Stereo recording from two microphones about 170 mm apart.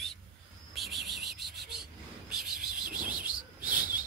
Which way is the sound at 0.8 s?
Centre (ahead or behind).